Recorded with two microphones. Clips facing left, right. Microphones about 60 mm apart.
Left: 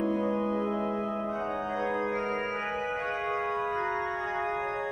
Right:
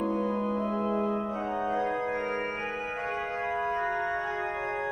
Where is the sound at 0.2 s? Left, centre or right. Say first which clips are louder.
Even; centre.